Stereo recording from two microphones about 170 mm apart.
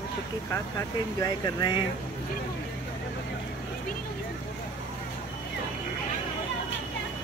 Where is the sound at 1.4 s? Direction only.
25° left (ahead or behind).